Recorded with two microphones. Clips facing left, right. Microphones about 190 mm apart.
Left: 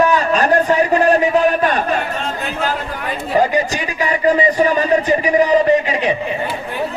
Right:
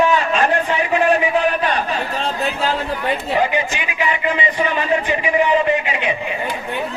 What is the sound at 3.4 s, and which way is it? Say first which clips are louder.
A man's voice: left 3 dB; 40° left (ahead or behind).